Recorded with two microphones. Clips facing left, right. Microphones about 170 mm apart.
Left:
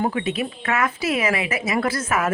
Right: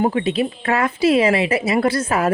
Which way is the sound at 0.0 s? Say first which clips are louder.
Right 5 dB; 30° right (ahead or behind).